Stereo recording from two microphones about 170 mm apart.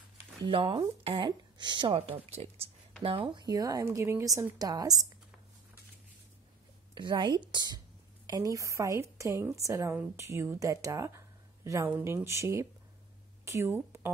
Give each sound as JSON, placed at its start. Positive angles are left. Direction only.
{"t": 0.4, "sound": "a woman's voice", "side_deg": -30}
{"t": 7.0, "sound": "a woman's voice", "side_deg": -25}